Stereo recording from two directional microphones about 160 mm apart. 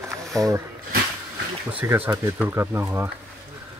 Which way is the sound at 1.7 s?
10° right (ahead or behind).